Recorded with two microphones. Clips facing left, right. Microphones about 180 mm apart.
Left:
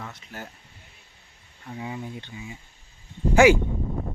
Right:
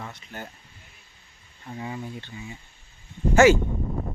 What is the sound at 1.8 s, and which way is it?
Speech, 10° left (ahead or behind).